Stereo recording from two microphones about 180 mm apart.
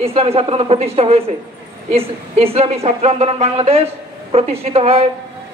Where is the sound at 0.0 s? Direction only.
35° right (ahead or behind).